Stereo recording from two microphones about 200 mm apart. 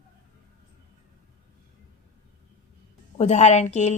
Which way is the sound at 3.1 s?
35° left (ahead or behind).